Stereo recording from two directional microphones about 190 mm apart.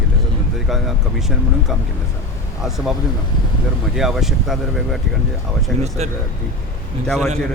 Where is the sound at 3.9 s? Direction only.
Centre (ahead or behind).